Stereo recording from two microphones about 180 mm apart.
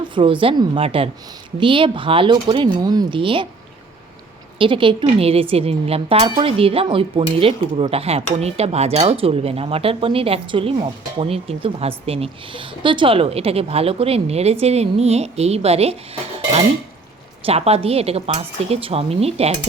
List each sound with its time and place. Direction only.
0.0 s speech: 25° right (ahead or behind)
4.5 s speech: 30° right (ahead or behind)
17.4 s speech: 35° right (ahead or behind)